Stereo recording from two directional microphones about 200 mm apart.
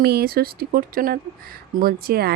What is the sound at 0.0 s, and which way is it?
Speech, 50° right (ahead or behind).